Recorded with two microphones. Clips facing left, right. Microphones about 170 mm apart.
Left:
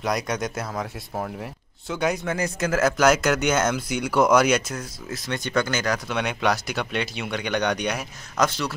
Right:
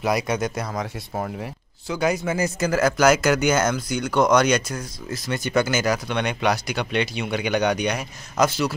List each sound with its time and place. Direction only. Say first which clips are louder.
0.0 s speech: right 3 dB; 5° right (ahead or behind)